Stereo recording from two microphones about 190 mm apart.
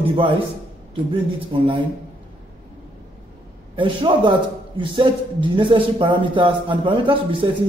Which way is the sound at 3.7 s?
25° right (ahead or behind).